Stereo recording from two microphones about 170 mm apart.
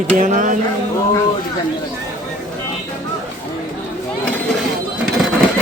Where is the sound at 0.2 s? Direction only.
50° right (ahead or behind).